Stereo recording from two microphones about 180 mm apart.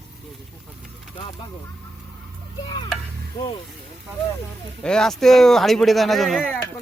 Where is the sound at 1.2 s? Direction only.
25° left (ahead or behind).